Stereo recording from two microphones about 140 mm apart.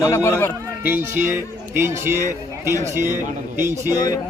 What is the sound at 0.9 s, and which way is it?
A man's voice, 15° right (ahead or behind).